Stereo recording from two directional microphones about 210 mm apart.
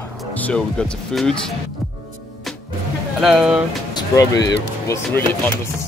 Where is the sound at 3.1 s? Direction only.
Centre (ahead or behind).